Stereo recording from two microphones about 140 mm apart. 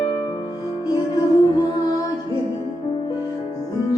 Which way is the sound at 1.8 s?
30° left (ahead or behind).